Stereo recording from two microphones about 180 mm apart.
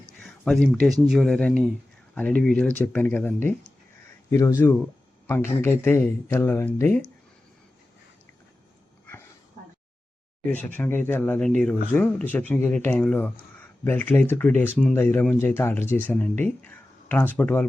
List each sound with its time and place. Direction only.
0.4 s speech: 5° left (ahead or behind)
10.5 s speech: 10° left (ahead or behind)